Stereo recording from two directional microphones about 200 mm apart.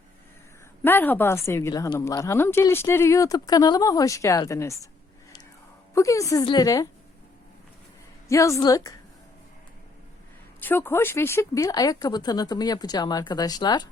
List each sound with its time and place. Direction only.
0.8 s a woman's voice: 10° left (ahead or behind)
5.9 s a woman's voice: 15° left (ahead or behind)
8.3 s a woman's voice: 15° left (ahead or behind)
10.6 s speech: 10° left (ahead or behind)